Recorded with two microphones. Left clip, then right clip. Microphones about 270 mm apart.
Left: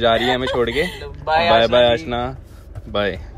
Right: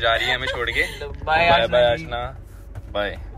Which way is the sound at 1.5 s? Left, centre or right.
Left.